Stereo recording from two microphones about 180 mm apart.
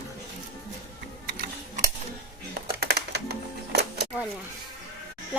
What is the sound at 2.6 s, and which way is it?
Music, 60° right (ahead or behind).